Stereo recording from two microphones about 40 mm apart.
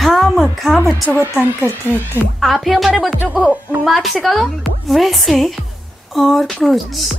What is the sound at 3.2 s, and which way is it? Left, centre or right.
Speech, right.